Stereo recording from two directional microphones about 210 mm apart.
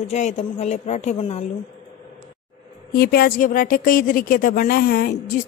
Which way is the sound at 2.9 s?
45° left (ahead or behind).